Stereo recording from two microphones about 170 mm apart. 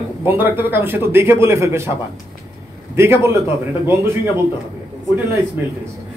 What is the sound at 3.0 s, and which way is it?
A man's voice, 15° right (ahead or behind).